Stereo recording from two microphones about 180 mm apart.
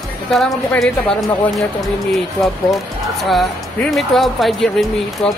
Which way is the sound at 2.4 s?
Centre (ahead or behind).